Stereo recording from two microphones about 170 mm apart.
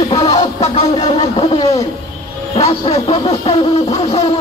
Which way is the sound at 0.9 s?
25° left (ahead or behind).